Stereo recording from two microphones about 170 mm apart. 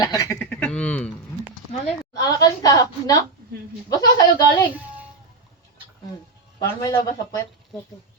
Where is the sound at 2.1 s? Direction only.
20° left (ahead or behind).